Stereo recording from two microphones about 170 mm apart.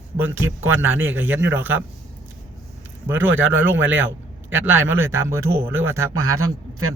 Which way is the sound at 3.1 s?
10° right (ahead or behind).